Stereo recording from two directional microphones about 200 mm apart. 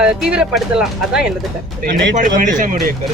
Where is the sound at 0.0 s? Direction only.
5° right (ahead or behind).